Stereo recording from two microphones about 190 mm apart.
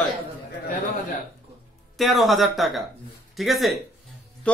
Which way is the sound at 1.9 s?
Centre (ahead or behind).